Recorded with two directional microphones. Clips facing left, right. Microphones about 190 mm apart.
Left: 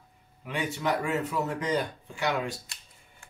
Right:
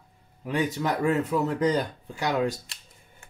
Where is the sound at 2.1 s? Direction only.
40° right (ahead or behind).